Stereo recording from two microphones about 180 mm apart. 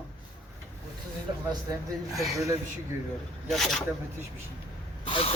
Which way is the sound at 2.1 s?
Centre (ahead or behind).